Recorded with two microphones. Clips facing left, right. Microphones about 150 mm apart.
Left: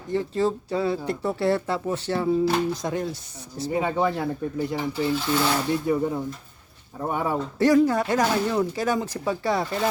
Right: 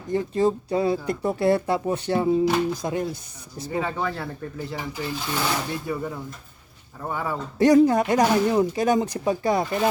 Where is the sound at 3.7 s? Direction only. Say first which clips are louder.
Left 3 dB; 20° left (ahead or behind).